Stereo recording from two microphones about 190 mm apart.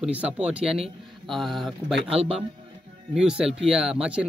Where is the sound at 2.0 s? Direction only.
30° right (ahead or behind).